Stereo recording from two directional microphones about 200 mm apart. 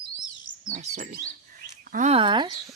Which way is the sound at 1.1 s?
50° right (ahead or behind).